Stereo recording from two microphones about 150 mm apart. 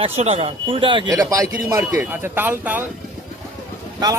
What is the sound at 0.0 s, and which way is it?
Speech, 45° right (ahead or behind).